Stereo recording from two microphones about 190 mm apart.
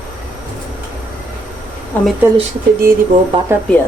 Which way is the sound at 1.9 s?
10° left (ahead or behind).